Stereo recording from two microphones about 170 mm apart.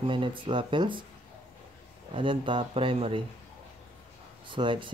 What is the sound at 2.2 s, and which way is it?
Speech, 30° right (ahead or behind).